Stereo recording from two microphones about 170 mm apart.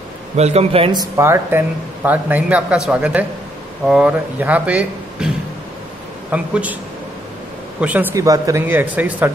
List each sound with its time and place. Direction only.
0.4 s a man's voice: 40° right (ahead or behind)
1.1 s speech: 15° right (ahead or behind)
6.3 s speech: 10° right (ahead or behind)
7.8 s speech: 10° right (ahead or behind)